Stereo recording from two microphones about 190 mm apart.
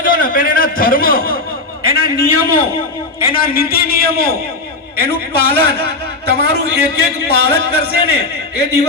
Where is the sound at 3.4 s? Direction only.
50° left (ahead or behind).